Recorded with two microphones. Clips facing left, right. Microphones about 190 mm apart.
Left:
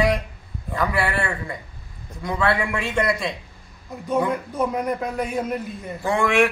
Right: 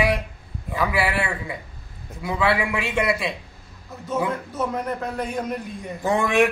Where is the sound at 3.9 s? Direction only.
15° left (ahead or behind).